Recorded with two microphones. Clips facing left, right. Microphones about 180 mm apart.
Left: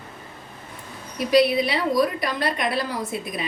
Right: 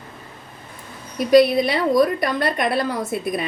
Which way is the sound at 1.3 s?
45° right (ahead or behind).